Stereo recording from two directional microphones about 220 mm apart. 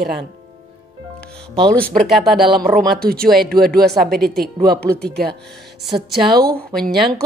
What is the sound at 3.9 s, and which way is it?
Speech, centre (ahead or behind).